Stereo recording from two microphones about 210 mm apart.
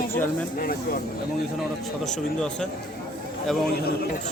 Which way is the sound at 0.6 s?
45° left (ahead or behind).